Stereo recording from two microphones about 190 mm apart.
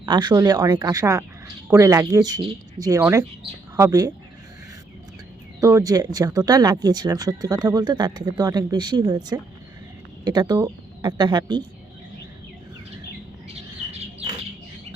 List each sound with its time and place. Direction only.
0.0 s speech: 20° right (ahead or behind)
5.5 s speech: 15° right (ahead or behind)